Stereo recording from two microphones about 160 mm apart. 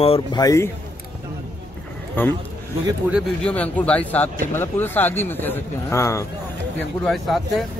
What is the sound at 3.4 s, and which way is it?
Speech, 10° left (ahead or behind).